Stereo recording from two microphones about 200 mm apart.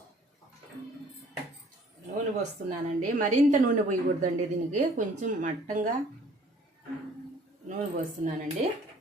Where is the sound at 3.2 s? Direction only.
40° right (ahead or behind).